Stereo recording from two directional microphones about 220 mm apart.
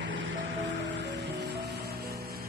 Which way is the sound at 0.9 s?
50° right (ahead or behind).